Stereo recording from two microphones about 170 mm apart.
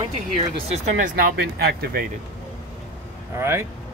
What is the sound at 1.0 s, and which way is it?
Speech, 60° right (ahead or behind).